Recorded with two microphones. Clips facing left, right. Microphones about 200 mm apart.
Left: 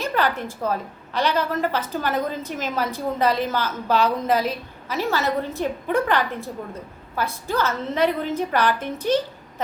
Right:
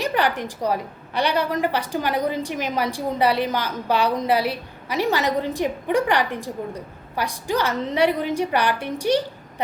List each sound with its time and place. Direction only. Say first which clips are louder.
0.0 s a woman's voice: right 1 dB; 15° right (ahead or behind)